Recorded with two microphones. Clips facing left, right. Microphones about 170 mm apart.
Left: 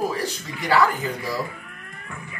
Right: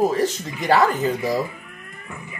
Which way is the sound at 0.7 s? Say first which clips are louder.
Right 3 dB; 20° right (ahead or behind).